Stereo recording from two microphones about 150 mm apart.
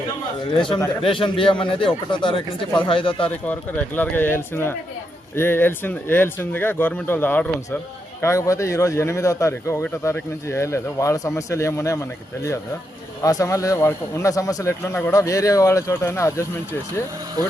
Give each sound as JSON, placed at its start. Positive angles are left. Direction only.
{"t": 0.5, "sound": "a man's voice", "side_deg": 35}
{"t": 3.2, "sound": "a man's voice", "side_deg": 10}
{"t": 13.2, "sound": "a man's voice", "side_deg": 20}